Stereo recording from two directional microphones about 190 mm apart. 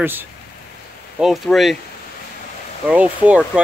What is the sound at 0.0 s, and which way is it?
Speech, 10° right (ahead or behind).